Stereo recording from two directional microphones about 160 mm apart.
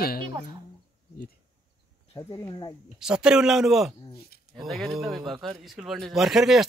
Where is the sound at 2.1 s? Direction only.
20° left (ahead or behind).